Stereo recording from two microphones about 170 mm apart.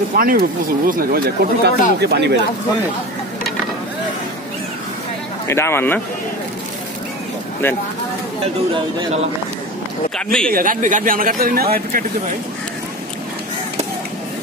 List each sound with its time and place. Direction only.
0.1 s speech: 60° right (ahead or behind); by 2.3 s 80° right
5.5 s speech: 15° left (ahead or behind)
8.7 s speech: 30° right (ahead or behind)
10.1 s speech: 5° left (ahead or behind)
10.5 s speech: 55° right (ahead or behind)